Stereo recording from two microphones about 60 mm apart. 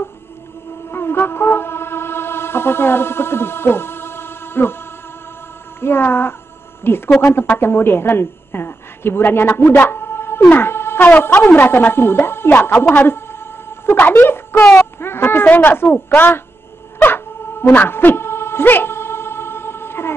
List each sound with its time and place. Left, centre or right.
0.9 s music: left
5.8 s a woman's voice: left
7.2 s speech: left
7.5 s a woman's voice: left
10.5 s a sound: left
11.5 s a woman's voice: left
12.9 s a sound: left
13.8 s a woman's voice: left
14.8 s a sound: left
15.4 s a woman's voice: left
17.0 s dog: left